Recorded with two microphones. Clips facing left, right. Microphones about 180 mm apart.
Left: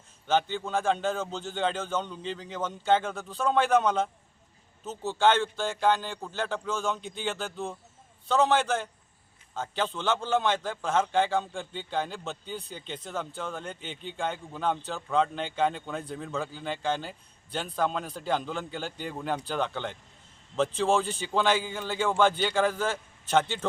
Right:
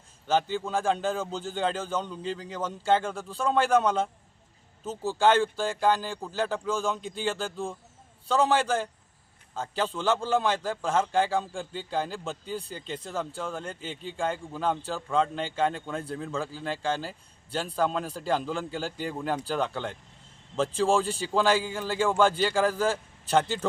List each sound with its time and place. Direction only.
0.3 s a man's voice: 5° right (ahead or behind)
8.3 s a man's voice: 10° right (ahead or behind)